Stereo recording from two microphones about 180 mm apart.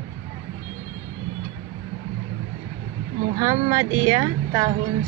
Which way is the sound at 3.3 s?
20° right (ahead or behind).